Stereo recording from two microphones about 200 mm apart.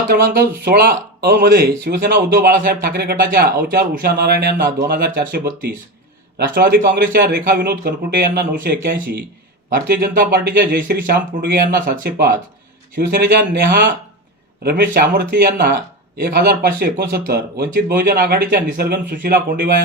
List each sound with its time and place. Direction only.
0.1 s speech: 50° right (ahead or behind)
6.5 s speech: 50° right (ahead or behind)